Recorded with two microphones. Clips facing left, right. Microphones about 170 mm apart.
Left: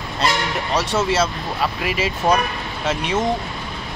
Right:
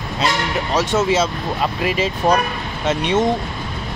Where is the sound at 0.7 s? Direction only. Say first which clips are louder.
Right 2 dB; centre (ahead or behind).